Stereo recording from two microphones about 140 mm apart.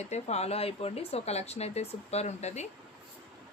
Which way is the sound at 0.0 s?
50° left (ahead or behind).